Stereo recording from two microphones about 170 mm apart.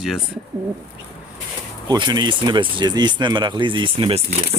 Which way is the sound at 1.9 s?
25° right (ahead or behind).